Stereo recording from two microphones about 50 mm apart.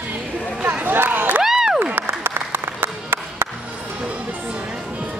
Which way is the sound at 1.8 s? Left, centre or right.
Right.